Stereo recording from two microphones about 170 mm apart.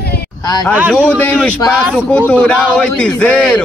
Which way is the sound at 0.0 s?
70° left (ahead or behind).